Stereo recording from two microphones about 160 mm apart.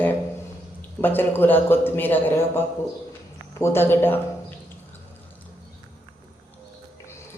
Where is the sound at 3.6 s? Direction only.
15° left (ahead or behind).